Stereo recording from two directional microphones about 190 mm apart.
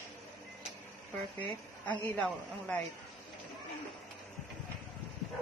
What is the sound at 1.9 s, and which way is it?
Speech, 10° left (ahead or behind).